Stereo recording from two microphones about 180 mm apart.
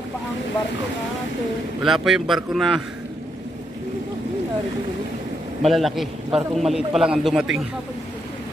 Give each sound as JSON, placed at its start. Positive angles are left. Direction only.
{"t": 1.8, "sound": "a man's voice", "side_deg": 0}
{"t": 5.7, "sound": "a man's voice", "side_deg": 0}